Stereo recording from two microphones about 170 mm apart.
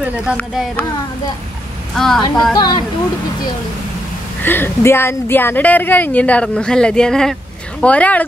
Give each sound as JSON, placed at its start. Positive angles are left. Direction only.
{"t": 0.4, "sound": "a woman's voice", "side_deg": 10}
{"t": 2.0, "sound": "a woman's voice", "side_deg": 0}
{"t": 2.5, "sound": "speech", "side_deg": 25}
{"t": 4.4, "sound": "a woman's voice", "side_deg": 10}